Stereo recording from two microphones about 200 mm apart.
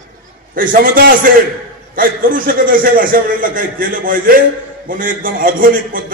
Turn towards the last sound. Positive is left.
turn(degrees=-45)  # may be behind; listen again after turning